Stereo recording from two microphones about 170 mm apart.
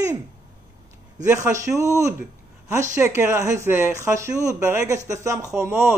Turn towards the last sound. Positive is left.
turn(degrees=-15)  # may be behind; listen again after turning